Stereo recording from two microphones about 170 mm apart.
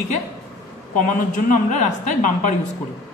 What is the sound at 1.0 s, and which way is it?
Speech, 50° left (ahead or behind).